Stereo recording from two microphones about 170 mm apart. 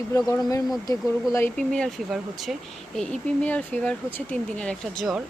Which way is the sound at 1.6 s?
5° left (ahead or behind).